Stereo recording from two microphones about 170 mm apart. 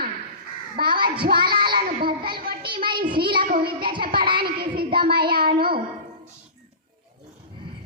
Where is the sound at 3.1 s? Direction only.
30° right (ahead or behind).